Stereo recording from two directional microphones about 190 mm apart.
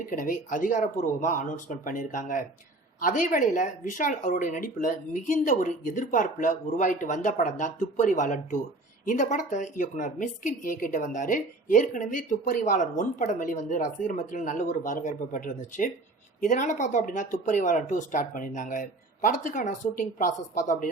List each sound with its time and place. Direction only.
0.1 s a woman's voice: 45° left (ahead or behind)